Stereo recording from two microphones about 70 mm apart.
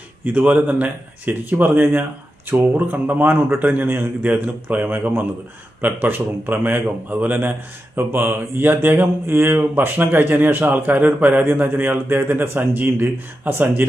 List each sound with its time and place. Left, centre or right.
0.3 s speech: right